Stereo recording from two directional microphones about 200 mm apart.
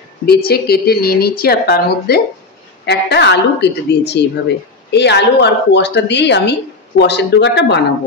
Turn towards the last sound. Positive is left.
turn(degrees=60)  # may be behind; listen again after turning